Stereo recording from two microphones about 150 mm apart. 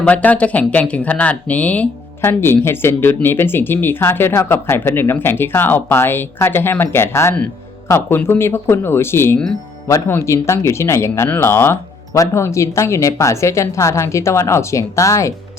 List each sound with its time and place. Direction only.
0.0 s speech: 10° left (ahead or behind)